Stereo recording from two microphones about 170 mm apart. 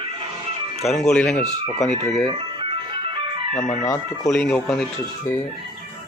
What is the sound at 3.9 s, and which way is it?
Speech, 20° left (ahead or behind).